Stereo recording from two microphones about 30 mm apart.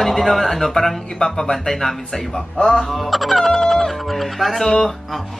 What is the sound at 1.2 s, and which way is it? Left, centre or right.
Speech, left.